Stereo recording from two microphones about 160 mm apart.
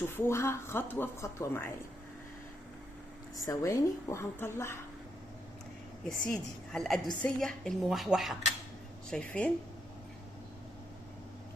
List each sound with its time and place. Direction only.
0.0 s speech: 15° left (ahead or behind)
3.3 s speech: 20° left (ahead or behind)
6.1 s a woman's voice: 5° left (ahead or behind)